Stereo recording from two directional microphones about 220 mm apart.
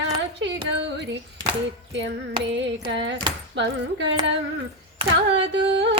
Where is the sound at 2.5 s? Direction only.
55° right (ahead or behind).